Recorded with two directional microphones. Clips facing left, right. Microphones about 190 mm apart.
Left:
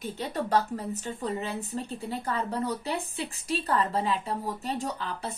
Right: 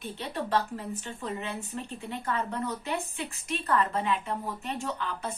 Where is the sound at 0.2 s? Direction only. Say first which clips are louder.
Left 2 dB; 40° left (ahead or behind).